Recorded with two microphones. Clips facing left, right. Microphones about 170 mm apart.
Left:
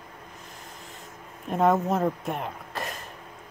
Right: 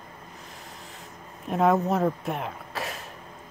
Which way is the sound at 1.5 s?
Centre (ahead or behind).